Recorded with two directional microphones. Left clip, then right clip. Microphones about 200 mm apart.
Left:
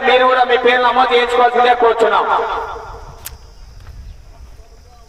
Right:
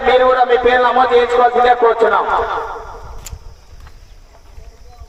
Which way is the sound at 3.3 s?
30° left (ahead or behind).